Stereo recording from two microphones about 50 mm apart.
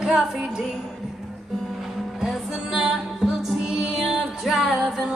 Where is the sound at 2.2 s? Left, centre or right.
Centre.